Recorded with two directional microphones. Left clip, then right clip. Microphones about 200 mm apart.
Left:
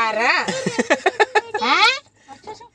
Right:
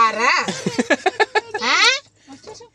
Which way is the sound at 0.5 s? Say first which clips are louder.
Even; 15° right (ahead or behind).